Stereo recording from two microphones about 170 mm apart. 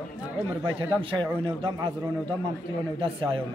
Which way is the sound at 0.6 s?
30° right (ahead or behind).